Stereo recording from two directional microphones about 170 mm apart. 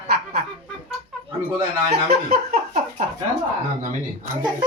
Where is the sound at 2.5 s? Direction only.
45° right (ahead or behind).